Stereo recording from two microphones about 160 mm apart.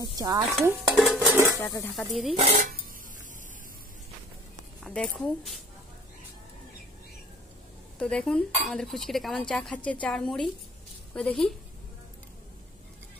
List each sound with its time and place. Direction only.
0.0 s stir: 25° right (ahead or behind)
0.8 s dishes: 5° right (ahead or behind)
1.6 s speech: 20° left (ahead or behind)
2.0 s speech: centre (ahead or behind)
2.3 s dishes: 45° right (ahead or behind)
4.8 s speech: 5° left (ahead or behind)
8.0 s speech: 5° left (ahead or behind)